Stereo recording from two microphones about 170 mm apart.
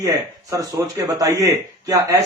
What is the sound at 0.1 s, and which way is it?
Speech, 20° right (ahead or behind).